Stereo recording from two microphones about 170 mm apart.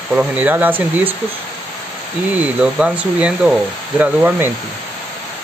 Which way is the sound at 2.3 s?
5° right (ahead or behind).